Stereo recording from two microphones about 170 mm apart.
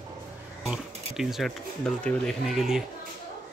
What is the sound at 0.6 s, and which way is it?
Speech, centre (ahead or behind).